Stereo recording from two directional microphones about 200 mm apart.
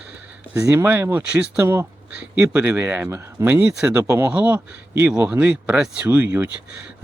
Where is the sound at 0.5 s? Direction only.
10° right (ahead or behind).